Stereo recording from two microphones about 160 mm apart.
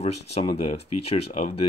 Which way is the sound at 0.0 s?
40° left (ahead or behind).